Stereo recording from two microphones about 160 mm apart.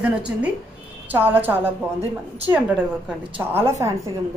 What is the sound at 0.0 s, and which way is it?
A woman's voice, 10° right (ahead or behind).